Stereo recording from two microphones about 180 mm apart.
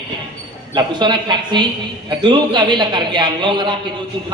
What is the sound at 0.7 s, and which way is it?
A man's voice, 25° right (ahead or behind).